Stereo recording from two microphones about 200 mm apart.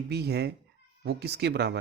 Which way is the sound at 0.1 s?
55° right (ahead or behind).